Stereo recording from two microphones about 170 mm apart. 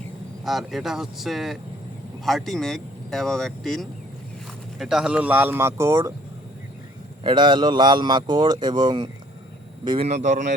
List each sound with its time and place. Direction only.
0.4 s speech: centre (ahead or behind); by 6.1 s 20° right (ahead or behind)
7.3 s speech: 25° right (ahead or behind)
10.1 s speech: 45° right (ahead or behind)